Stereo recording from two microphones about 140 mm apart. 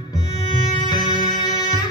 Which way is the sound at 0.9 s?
30° left (ahead or behind).